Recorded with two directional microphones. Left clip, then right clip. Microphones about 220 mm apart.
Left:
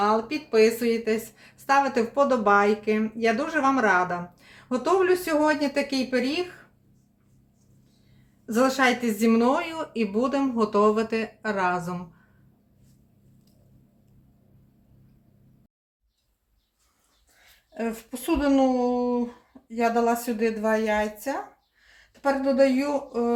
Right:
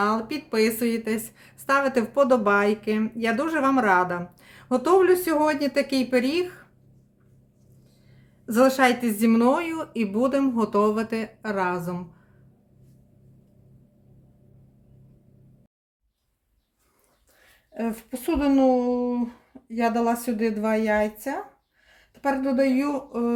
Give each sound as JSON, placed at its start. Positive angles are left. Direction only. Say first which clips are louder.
{"t": 0.0, "sound": "speech", "louder": "left 1 dB", "side_deg": -30}
{"t": 8.4, "sound": "speech", "louder": "right 3 dB", "side_deg": -25}
{"t": 17.7, "sound": "speech", "louder": "even", "side_deg": -40}
{"t": 22.4, "sound": "speech", "louder": "left 3 dB", "side_deg": -40}